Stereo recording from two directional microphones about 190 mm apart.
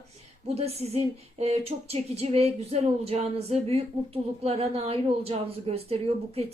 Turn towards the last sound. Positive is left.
turn(degrees=-30)  # may be behind; listen again after turning